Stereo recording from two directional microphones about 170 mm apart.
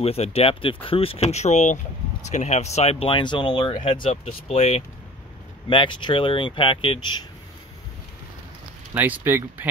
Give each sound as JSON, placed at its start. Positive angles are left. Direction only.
{"t": 0.0, "sound": "speech", "side_deg": 35}
{"t": 8.9, "sound": "speech", "side_deg": -10}